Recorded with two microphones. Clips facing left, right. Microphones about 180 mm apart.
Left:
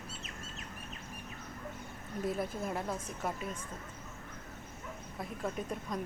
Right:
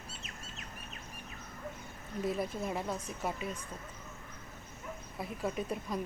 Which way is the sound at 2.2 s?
Centre (ahead or behind).